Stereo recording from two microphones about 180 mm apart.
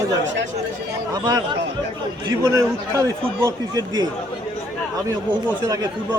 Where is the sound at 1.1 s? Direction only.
20° right (ahead or behind).